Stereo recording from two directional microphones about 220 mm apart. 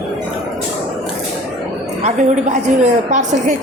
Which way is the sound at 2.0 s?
30° right (ahead or behind).